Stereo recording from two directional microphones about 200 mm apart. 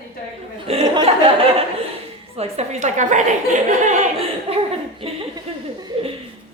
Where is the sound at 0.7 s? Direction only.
30° right (ahead or behind).